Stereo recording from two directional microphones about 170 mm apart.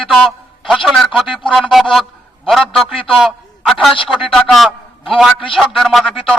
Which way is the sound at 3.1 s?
Centre (ahead or behind).